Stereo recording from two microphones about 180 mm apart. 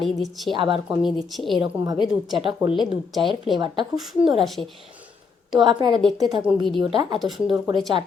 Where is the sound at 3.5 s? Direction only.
25° right (ahead or behind).